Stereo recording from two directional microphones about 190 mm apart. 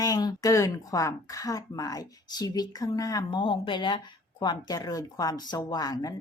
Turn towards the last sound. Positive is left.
turn(degrees=20)  # may be behind; listen again after turning